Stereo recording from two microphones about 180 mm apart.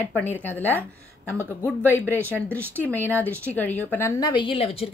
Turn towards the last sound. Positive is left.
turn(degrees=30)  # may be behind; listen again after turning